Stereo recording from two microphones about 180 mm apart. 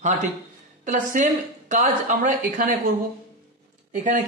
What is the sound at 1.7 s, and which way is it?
Speech, 45° right (ahead or behind).